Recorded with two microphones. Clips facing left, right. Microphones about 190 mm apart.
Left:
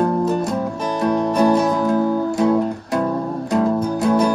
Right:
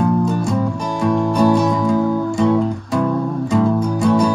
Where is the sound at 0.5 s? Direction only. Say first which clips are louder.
Right 2 dB; centre (ahead or behind).